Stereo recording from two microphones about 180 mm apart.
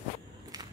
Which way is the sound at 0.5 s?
20° right (ahead or behind).